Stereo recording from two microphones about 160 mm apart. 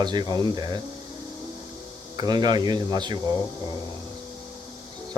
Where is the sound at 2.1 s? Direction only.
25° right (ahead or behind).